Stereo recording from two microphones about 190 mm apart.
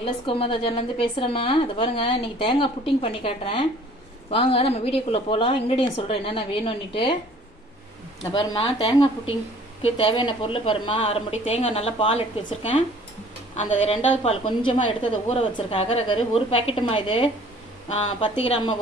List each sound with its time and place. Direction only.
0.0 s speech: 30° left (ahead or behind)
8.2 s a woman's voice: 25° left (ahead or behind)